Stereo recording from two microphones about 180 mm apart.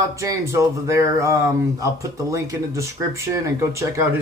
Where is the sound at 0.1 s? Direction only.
15° right (ahead or behind).